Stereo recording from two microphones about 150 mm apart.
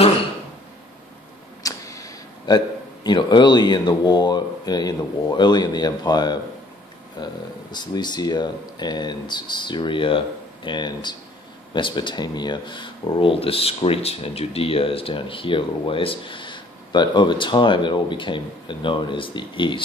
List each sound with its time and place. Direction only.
1.6 s speech: 20° left (ahead or behind)